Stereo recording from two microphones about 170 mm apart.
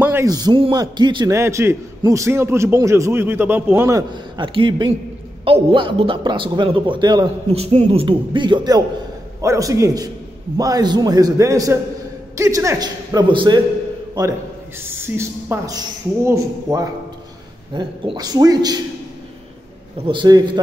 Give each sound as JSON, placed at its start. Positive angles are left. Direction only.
{"t": 0.0, "sound": "a man's voice", "side_deg": -15}
{"t": 4.1, "sound": "a man's voice", "side_deg": -30}
{"t": 7.4, "sound": "a man's voice", "side_deg": -40}
{"t": 14.8, "sound": "a man's voice", "side_deg": -15}
{"t": 20.1, "sound": "a man's voice", "side_deg": -25}